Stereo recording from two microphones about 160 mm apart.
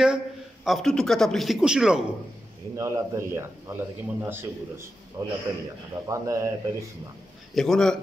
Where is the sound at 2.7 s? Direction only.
20° right (ahead or behind).